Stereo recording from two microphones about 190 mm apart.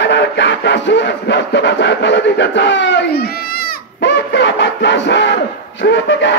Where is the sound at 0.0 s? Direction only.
65° left (ahead or behind).